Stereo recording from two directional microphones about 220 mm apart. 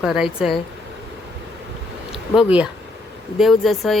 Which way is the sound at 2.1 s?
5° right (ahead or behind).